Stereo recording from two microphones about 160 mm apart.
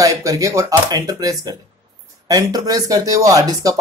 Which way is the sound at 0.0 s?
20° right (ahead or behind).